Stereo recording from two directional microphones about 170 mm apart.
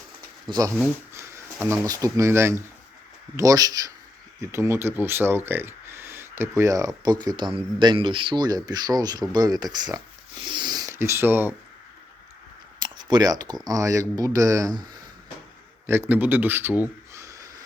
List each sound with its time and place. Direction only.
0.4 s speech: 20° right (ahead or behind)
12.8 s speech: 25° right (ahead or behind)
15.9 s speech: 10° right (ahead or behind)